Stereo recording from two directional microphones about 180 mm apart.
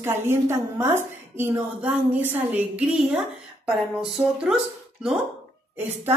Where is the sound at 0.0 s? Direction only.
15° right (ahead or behind).